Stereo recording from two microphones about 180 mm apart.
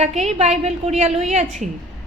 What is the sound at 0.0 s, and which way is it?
A woman's voice, 40° right (ahead or behind).